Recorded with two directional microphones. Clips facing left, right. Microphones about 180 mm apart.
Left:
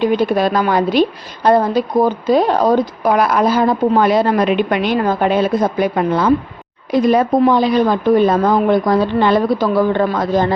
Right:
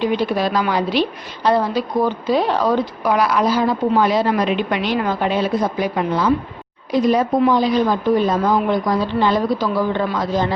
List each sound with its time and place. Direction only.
0.0 s a woman's voice: 50° left (ahead or behind)